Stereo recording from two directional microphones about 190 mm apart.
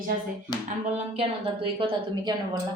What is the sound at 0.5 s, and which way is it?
Hands, 20° left (ahead or behind).